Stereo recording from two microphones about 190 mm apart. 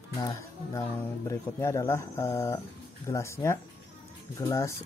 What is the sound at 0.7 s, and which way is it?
Speech, 15° left (ahead or behind).